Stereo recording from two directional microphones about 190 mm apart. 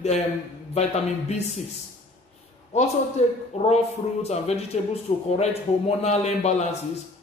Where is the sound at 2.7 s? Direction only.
35° left (ahead or behind).